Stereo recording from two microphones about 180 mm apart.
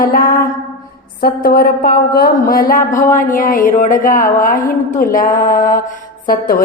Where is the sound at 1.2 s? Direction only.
55° left (ahead or behind).